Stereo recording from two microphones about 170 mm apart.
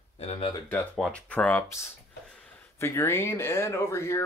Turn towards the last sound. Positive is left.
turn(degrees=15)  # may be behind; listen again after turning